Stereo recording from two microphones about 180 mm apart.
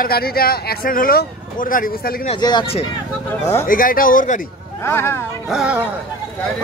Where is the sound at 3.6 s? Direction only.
50° left (ahead or behind).